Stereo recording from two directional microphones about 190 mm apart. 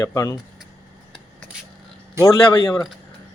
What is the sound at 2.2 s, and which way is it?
Speech, 15° left (ahead or behind).